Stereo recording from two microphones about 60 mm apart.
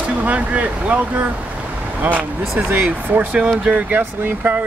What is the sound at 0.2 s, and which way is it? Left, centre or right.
Speech, right.